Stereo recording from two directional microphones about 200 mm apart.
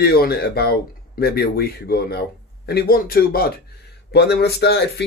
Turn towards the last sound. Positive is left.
turn(degrees=55)  # may be behind; listen again after turning